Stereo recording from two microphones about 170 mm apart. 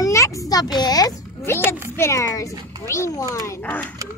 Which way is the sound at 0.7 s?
25° left (ahead or behind).